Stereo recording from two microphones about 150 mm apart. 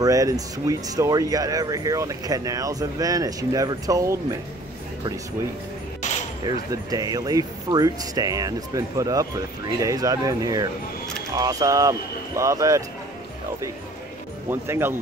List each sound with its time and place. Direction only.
0.0 s speech: 25° right (ahead or behind)
6.4 s speech: 25° right (ahead or behind)
14.5 s speech: 15° right (ahead or behind)